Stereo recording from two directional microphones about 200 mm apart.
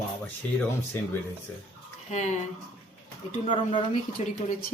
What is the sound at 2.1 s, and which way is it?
Speech, 35° left (ahead or behind).